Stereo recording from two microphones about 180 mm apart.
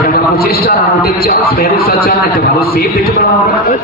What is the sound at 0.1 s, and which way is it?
A man's voice, 60° left (ahead or behind).